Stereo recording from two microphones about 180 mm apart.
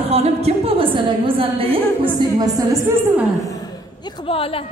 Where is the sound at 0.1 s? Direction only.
35° right (ahead or behind).